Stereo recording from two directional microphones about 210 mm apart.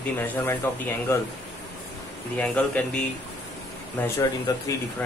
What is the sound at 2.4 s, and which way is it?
Speech, 5° left (ahead or behind).